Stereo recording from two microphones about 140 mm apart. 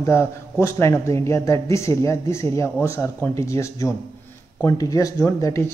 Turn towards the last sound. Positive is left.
turn(degrees=20)  # may be behind; listen again after turning